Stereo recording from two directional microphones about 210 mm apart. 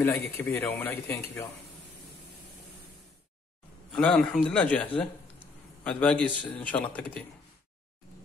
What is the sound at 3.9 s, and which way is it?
Speech, 5° left (ahead or behind).